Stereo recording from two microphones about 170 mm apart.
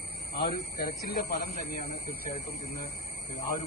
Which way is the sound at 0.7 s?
65° left (ahead or behind).